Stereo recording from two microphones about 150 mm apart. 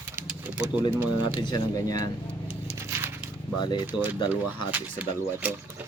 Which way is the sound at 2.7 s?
15° right (ahead or behind).